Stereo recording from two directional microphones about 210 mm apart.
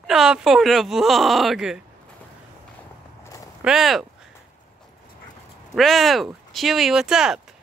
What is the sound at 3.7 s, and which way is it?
Speech, centre (ahead or behind).